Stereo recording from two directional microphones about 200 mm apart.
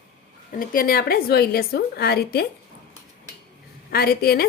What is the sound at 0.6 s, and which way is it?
A woman's voice, 45° left (ahead or behind).